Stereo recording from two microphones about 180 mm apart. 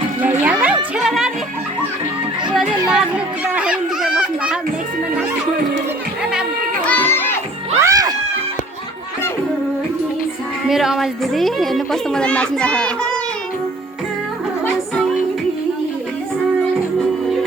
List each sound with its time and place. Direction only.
0.2 s music: 10° right (ahead or behind)
3.5 s children playing: 5° right (ahead or behind)
6.8 s children playing: 10° left (ahead or behind)
7.8 s crowd: 20° right (ahead or behind)
10.7 s a woman's voice: centre (ahead or behind)